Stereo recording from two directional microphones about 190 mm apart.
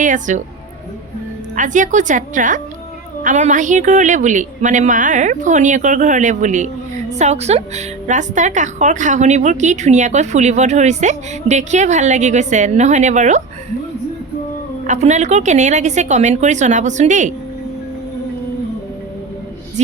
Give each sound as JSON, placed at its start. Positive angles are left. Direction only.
{"t": 0.0, "sound": "a woman's voice", "side_deg": -40}
{"t": 1.5, "sound": "a woman's voice", "side_deg": -40}
{"t": 14.8, "sound": "a woman's voice", "side_deg": -40}